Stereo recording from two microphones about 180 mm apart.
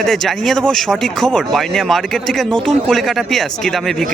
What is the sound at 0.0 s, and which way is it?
Speech, centre (ahead or behind).